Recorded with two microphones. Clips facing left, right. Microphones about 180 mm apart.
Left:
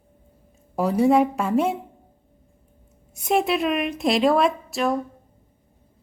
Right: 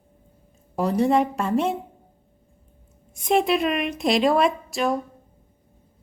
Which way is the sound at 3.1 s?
5° left (ahead or behind).